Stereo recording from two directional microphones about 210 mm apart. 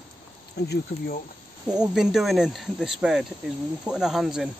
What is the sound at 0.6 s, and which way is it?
Speech, 55° left (ahead or behind).